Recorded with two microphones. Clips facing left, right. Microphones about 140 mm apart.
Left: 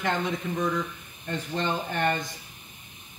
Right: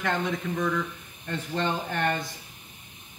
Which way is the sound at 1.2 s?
10° left (ahead or behind).